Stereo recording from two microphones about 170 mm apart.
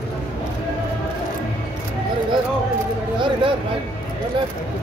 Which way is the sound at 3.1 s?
30° right (ahead or behind).